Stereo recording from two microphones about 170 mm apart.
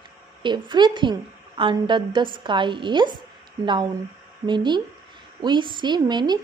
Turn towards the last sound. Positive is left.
turn(degrees=-25)  # may be behind; listen again after turning